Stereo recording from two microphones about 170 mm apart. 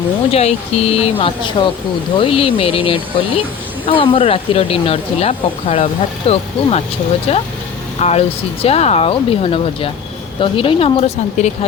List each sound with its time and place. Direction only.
0.3 s speech: 35° left (ahead or behind)